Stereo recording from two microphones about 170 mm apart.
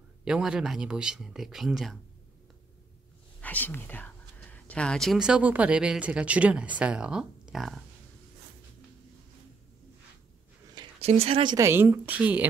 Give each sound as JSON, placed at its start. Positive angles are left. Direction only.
{"t": 0.2, "sound": "speech", "side_deg": -5}
{"t": 3.3, "sound": "speech", "side_deg": 10}
{"t": 11.0, "sound": "speech", "side_deg": -35}
{"t": 11.5, "sound": "a woman's voice", "side_deg": -15}